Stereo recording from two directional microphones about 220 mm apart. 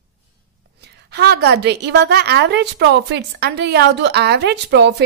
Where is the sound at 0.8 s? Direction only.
50° right (ahead or behind).